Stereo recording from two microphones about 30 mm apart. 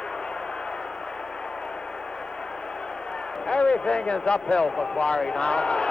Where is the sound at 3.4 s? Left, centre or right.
Left.